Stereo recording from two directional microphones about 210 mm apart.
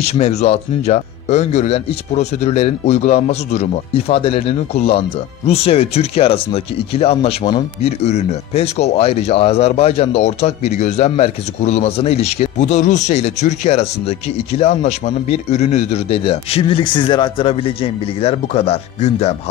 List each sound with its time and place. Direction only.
0.0 s speech: 30° left (ahead or behind)